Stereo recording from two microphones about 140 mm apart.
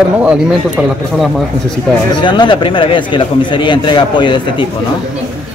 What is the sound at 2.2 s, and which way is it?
Speech, 35° left (ahead or behind).